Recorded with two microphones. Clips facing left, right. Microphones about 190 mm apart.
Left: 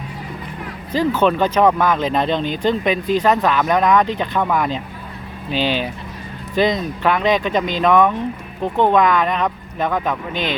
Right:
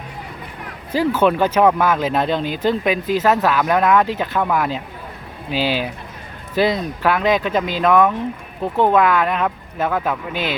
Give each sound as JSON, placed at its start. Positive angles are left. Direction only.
{"t": 0.9, "sound": "speech", "side_deg": -10}